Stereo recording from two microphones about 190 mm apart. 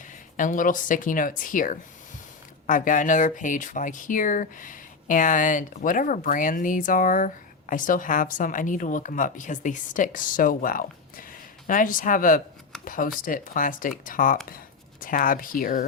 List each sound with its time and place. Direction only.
0.3 s speech: 45° left (ahead or behind)